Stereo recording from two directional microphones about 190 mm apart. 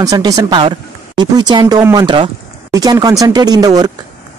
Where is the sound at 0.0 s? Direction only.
20° right (ahead or behind).